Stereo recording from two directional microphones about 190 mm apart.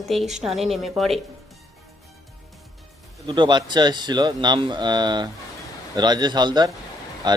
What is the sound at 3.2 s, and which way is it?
Speech, 25° right (ahead or behind).